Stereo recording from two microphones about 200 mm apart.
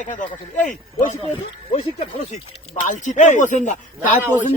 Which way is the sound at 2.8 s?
40° left (ahead or behind).